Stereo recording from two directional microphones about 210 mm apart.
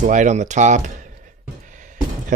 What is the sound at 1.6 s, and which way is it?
Music, 40° right (ahead or behind).